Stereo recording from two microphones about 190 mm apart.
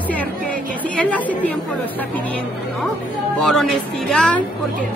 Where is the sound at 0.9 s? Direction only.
10° left (ahead or behind).